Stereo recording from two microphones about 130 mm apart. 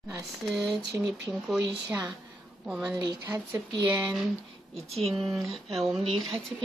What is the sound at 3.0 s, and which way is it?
Speech, 30° right (ahead or behind).